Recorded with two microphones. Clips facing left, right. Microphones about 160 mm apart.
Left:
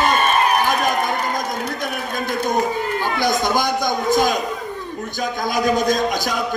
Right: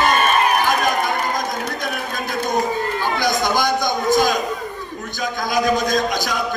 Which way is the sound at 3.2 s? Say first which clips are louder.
Left 1 dB; 30° left (ahead or behind).